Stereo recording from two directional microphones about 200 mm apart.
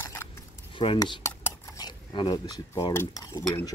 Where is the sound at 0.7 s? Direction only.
25° left (ahead or behind).